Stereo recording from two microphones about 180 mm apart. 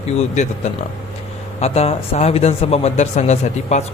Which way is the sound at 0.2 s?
40° left (ahead or behind).